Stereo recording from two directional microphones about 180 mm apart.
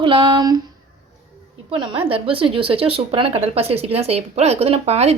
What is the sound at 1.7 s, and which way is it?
A woman's voice, 30° right (ahead or behind).